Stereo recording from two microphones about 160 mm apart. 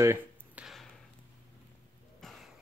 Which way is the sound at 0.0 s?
15° right (ahead or behind).